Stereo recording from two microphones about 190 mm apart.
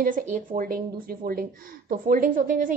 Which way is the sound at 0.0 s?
45° right (ahead or behind).